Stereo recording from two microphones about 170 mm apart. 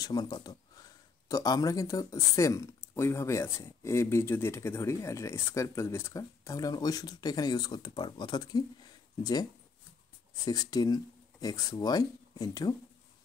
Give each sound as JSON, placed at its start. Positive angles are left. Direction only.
{"t": 0.0, "sound": "speech", "side_deg": 25}